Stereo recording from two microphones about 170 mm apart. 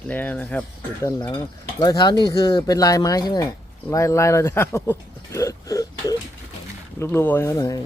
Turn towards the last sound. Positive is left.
turn(degrees=20)  # may be behind; listen again after turning